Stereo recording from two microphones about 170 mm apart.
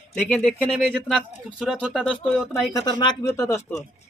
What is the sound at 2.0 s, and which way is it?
Speech, 5° left (ahead or behind).